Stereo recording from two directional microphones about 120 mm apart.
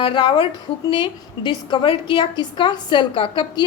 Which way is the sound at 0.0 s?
45° left (ahead or behind).